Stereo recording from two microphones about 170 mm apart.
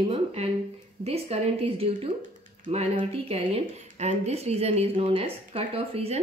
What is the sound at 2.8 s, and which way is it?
A woman's voice, 35° right (ahead or behind).